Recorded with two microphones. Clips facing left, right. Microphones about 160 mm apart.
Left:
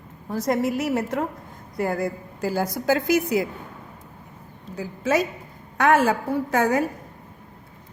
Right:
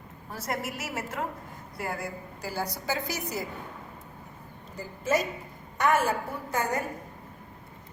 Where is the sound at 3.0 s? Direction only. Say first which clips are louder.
Left 12 dB; 65° left (ahead or behind).